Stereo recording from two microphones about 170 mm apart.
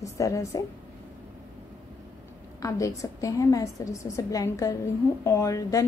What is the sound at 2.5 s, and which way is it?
A woman's voice, 20° left (ahead or behind).